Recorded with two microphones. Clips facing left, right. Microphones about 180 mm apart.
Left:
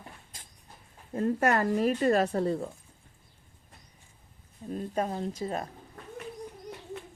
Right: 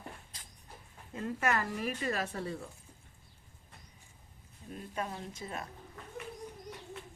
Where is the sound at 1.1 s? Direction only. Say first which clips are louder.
Left 7 dB; 40° left (ahead or behind).